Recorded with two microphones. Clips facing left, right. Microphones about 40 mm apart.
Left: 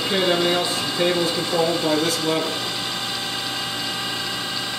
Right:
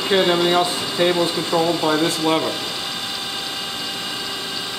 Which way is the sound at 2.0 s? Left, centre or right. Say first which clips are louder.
Right 3 dB; right.